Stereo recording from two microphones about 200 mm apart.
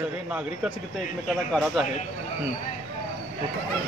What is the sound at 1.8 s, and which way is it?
Speech, centre (ahead or behind).